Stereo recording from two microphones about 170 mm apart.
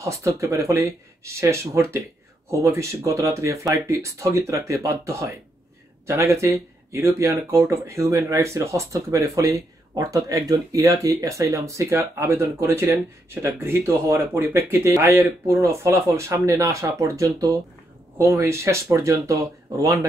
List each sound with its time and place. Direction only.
0.0 s speech: 20° right (ahead or behind)